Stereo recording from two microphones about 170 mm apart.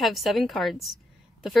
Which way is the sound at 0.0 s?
Centre (ahead or behind).